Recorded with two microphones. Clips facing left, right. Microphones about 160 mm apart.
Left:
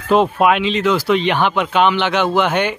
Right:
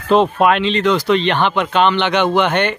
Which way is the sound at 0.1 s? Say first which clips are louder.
Right 1 dB; 10° left (ahead or behind).